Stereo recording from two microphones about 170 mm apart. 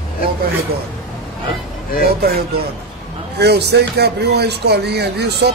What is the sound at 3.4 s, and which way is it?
Speech, 75° right (ahead or behind).